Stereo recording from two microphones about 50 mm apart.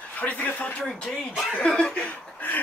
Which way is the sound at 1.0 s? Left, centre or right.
Centre.